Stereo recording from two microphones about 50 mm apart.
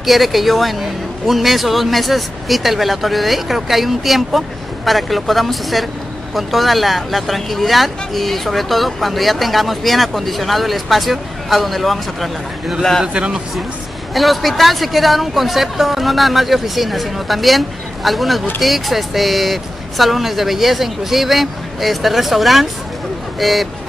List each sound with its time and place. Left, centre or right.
0.0 s speech: centre
13.0 s speech: centre
14.1 s speech: centre